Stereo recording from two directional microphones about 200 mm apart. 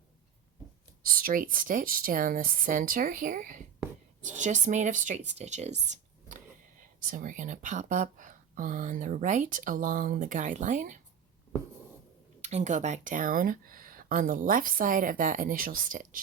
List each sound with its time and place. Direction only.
1.0 s speech: 45° right (ahead or behind)
5.8 s a sound: 35° right (ahead or behind)
7.1 s speech: 40° right (ahead or behind)
12.4 s speech: 35° right (ahead or behind)